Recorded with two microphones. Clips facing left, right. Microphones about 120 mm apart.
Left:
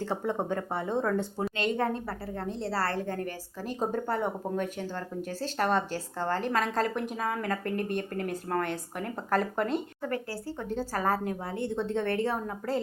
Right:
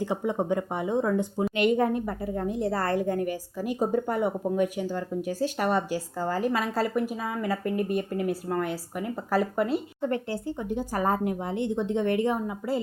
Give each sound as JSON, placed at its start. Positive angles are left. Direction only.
{"t": 0.0, "sound": "a woman's voice", "side_deg": -15}
{"t": 10.0, "sound": "a woman's voice", "side_deg": -25}